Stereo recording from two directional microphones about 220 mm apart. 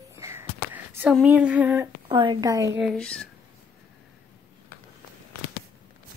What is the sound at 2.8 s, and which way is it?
Speech, 5° left (ahead or behind).